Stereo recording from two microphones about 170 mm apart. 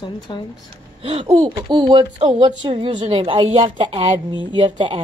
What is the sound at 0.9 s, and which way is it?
A woman's voice, 35° right (ahead or behind).